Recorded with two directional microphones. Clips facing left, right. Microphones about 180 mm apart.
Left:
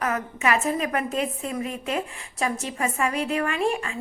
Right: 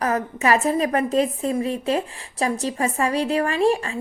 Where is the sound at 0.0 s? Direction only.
35° right (ahead or behind).